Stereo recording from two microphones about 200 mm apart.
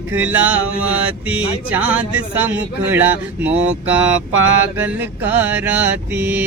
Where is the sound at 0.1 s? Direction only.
10° right (ahead or behind).